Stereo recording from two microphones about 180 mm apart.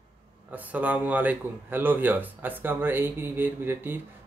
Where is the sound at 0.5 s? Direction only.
10° right (ahead or behind).